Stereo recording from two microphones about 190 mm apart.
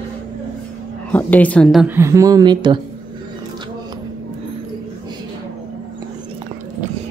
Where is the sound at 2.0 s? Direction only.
15° right (ahead or behind).